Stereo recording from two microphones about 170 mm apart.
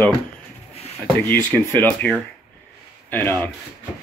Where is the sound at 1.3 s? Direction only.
10° left (ahead or behind).